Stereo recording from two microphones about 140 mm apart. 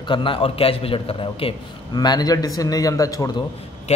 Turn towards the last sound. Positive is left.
turn(degrees=25)  # may be behind; listen again after turning